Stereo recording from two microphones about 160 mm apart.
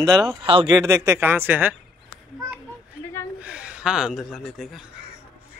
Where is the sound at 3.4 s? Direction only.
10° right (ahead or behind).